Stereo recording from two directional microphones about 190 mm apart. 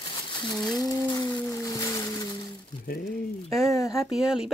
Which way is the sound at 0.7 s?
20° left (ahead or behind).